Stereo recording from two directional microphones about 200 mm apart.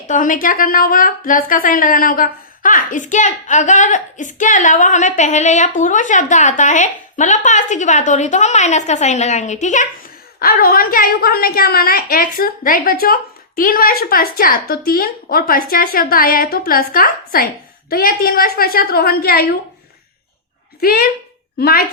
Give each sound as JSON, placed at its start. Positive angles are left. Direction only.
{"t": 0.1, "sound": "a woman's voice", "side_deg": 40}
{"t": 20.8, "sound": "a woman's voice", "side_deg": 50}